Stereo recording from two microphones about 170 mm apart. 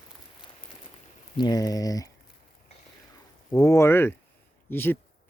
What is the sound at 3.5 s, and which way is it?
Speech, 20° left (ahead or behind).